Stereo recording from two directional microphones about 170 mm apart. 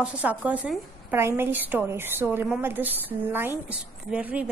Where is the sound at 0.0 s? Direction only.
5° right (ahead or behind).